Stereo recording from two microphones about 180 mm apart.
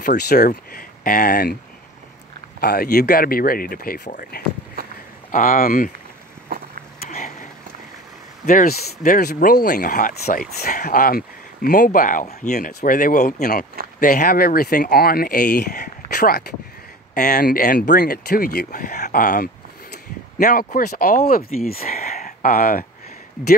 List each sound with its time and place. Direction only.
0.0 s speech: 55° left (ahead or behind)
2.6 s speech: 60° left (ahead or behind)
4.8 s a sound: 55° right (ahead or behind)
5.3 s speech: 50° left (ahead or behind)
7.0 s a sound: 45° left (ahead or behind)
8.5 s speech: 50° left (ahead or behind)
16.1 s speech: 60° left (ahead or behind)